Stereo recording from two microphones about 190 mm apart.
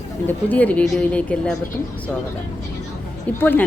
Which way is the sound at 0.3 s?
10° left (ahead or behind).